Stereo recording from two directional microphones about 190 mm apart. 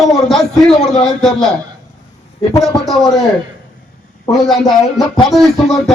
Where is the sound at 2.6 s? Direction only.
Centre (ahead or behind).